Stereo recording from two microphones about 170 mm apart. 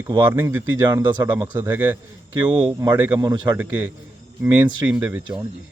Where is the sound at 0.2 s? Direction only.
15° right (ahead or behind).